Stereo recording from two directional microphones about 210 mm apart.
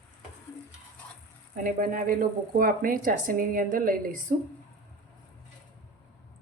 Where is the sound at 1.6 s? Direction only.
40° right (ahead or behind).